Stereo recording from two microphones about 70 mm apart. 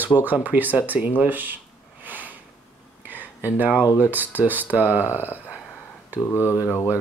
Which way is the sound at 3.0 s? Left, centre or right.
Right.